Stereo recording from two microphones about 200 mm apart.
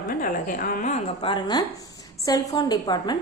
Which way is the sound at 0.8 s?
40° left (ahead or behind).